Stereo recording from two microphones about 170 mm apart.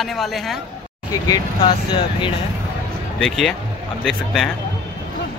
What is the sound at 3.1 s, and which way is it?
Speech, centre (ahead or behind).